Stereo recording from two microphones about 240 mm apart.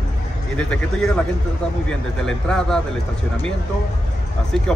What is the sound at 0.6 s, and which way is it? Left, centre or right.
Speech, centre.